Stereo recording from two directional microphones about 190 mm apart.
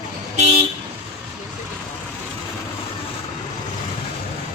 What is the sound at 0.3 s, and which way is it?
Vehicle, 35° right (ahead or behind).